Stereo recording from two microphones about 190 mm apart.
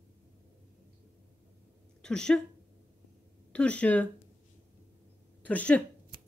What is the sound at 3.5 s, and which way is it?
Speech, 5° left (ahead or behind).